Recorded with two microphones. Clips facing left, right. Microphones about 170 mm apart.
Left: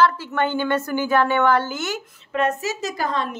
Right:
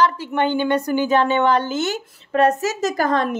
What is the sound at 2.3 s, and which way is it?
A woman's voice, 40° right (ahead or behind).